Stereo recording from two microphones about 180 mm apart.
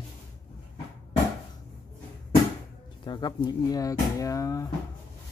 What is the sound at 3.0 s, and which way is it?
Speech, 25° left (ahead or behind).